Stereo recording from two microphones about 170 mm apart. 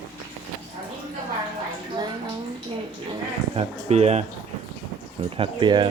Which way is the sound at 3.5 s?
40° right (ahead or behind).